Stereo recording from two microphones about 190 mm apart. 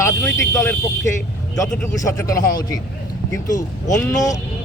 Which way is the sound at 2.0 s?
15° left (ahead or behind).